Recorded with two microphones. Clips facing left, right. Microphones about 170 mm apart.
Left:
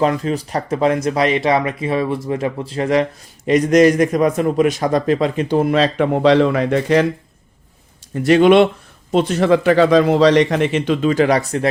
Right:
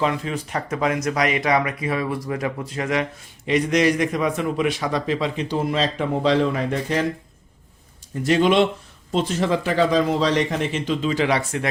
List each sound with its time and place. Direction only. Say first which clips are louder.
0.0 s speech: left 6 dB; 40° left (ahead or behind); by 7.1 s 75° left (ahead or behind)
8.1 s a man's voice: left 7 dB; 65° left (ahead or behind); by 11.7 s 40° left (ahead or behind)